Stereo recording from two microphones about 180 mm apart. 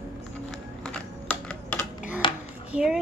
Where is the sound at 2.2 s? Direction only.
25° left (ahead or behind).